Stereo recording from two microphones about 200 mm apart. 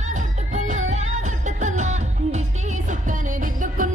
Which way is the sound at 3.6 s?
40° right (ahead or behind).